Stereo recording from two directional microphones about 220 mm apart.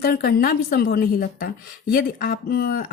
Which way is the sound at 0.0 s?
45° left (ahead or behind).